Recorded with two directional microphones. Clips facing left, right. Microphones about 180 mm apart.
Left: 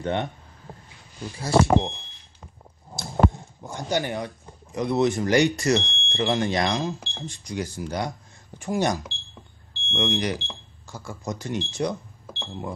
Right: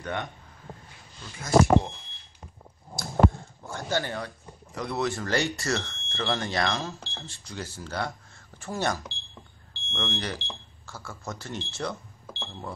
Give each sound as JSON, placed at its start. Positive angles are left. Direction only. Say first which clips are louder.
{"t": 0.0, "sound": "speech", "louder": "left 6 dB", "side_deg": 25}
{"t": 1.4, "sound": "speech", "louder": "left 1 dB", "side_deg": 25}
{"t": 3.6, "sound": "speech", "louder": "left 3 dB", "side_deg": 15}